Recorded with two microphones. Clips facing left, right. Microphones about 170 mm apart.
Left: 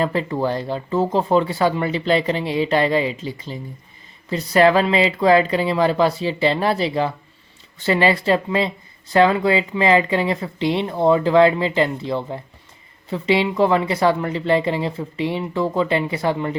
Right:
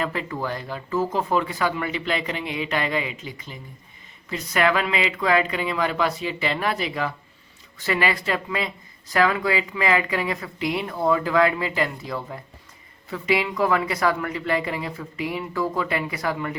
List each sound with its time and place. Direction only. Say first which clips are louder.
0.0 s speech: left 7 dB; 30° left (ahead or behind)